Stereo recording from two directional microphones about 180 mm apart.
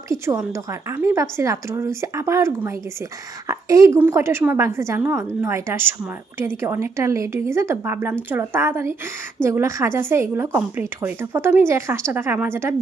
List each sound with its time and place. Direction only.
0.1 s a woman's voice: 15° right (ahead or behind)